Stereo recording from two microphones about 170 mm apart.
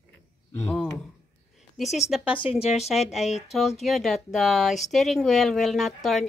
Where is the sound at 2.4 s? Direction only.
35° left (ahead or behind).